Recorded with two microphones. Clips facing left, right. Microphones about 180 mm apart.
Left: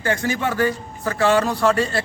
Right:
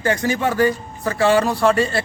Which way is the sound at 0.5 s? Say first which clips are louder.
Right 3 dB; 15° right (ahead or behind).